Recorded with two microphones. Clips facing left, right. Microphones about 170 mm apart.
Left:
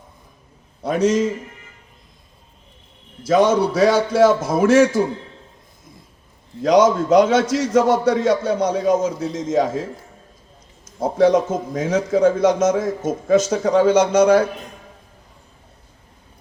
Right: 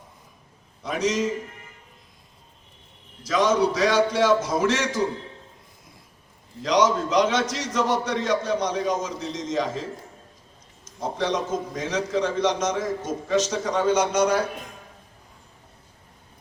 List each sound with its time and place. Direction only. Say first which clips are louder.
0.9 s a man's voice: left 7 dB; 55° left (ahead or behind)
3.5 s a man's voice: left 5 dB; 55° left (ahead or behind)
6.6 s a man's voice: left 7 dB; 50° left (ahead or behind)
11.0 s a man's voice: left 10 dB; 55° left (ahead or behind)